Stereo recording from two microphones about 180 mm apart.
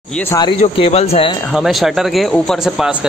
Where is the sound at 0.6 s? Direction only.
35° left (ahead or behind).